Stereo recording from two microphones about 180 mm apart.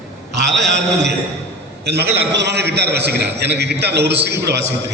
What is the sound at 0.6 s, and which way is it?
A man's voice, 80° right.